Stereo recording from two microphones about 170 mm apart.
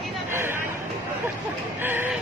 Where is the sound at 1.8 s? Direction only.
10° right (ahead or behind).